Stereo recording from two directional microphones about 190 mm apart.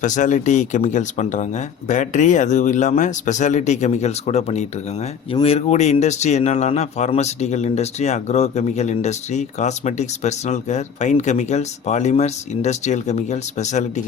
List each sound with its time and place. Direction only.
0.0 s speech: 40° left (ahead or behind)